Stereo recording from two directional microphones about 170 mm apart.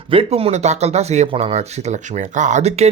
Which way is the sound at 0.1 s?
35° right (ahead or behind).